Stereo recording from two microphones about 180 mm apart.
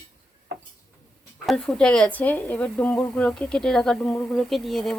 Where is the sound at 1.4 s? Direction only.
5° left (ahead or behind).